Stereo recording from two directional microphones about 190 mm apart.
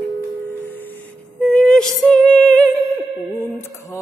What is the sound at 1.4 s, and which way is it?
Music, 5° left (ahead or behind).